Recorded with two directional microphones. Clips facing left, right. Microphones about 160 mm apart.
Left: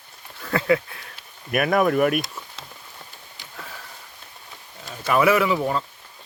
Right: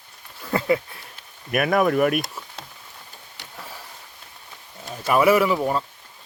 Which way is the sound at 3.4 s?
70° right (ahead or behind).